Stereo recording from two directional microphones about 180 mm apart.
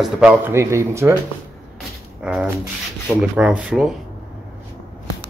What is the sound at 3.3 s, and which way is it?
Speech, 5° right (ahead or behind).